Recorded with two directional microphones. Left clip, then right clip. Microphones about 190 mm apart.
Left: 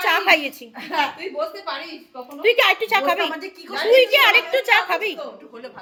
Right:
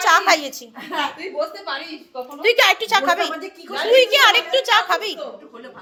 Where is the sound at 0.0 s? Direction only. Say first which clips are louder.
Right 2 dB; 15° left (ahead or behind).